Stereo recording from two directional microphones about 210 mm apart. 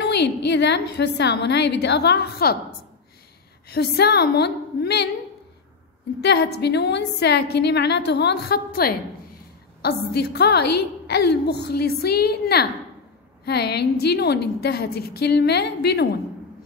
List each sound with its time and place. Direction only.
0.0 s a woman's voice: 55° left (ahead or behind)
3.6 s a woman's voice: 50° left (ahead or behind)
6.2 s a woman's voice: 50° left (ahead or behind)